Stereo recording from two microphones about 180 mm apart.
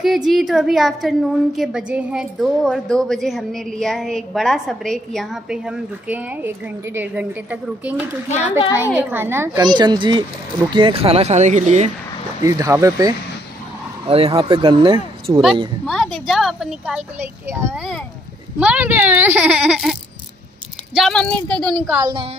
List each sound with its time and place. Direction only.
0.0 s a woman's voice: centre (ahead or behind); by 11.9 s 40° right (ahead or behind)
12.4 s speech: 20° right (ahead or behind)
14.0 s speech: 30° right (ahead or behind)
15.8 s a woman's voice: centre (ahead or behind)
22.0 s speech: 25° right (ahead or behind)